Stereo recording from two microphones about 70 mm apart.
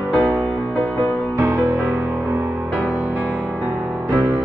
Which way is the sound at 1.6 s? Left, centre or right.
Right.